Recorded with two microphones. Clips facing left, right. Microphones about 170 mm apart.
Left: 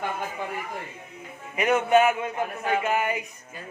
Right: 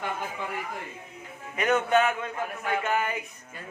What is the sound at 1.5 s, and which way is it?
Speech, 10° left (ahead or behind).